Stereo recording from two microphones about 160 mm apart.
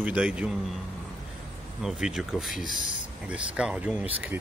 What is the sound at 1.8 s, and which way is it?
A man's voice, 5° right (ahead or behind).